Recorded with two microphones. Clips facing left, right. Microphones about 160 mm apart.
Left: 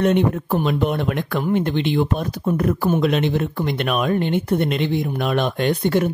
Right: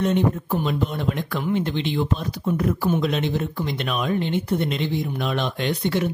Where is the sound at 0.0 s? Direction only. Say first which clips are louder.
Left 3 dB; 65° left (ahead or behind).